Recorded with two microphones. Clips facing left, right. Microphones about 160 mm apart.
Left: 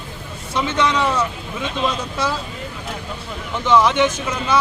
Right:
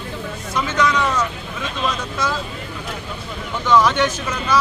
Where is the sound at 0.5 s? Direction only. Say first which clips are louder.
Left 1 dB; 25° left (ahead or behind).